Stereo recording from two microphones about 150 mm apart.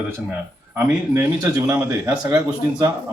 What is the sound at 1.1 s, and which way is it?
Speech, 20° right (ahead or behind).